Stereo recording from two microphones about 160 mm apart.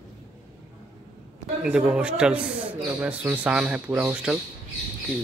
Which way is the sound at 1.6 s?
5° right (ahead or behind).